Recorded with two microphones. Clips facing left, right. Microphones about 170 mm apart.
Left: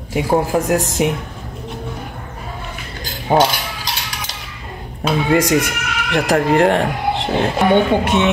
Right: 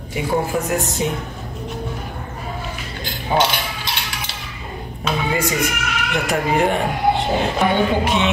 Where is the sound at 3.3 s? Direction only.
45° left (ahead or behind).